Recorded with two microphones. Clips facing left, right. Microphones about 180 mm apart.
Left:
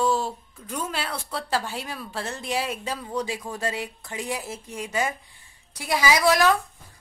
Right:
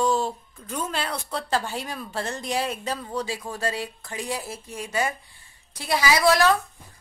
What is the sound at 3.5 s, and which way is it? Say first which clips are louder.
Speech: right 2 dB; 20° left (ahead or behind).